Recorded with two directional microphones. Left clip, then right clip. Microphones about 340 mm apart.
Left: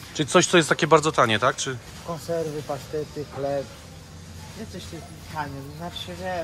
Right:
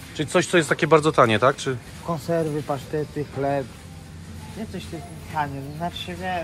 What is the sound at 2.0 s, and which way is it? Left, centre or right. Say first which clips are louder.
Speech: right 3 dB; right.